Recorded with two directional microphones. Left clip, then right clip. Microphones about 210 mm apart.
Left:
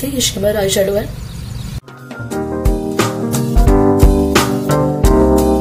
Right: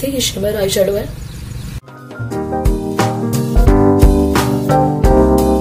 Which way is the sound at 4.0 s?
Centre (ahead or behind).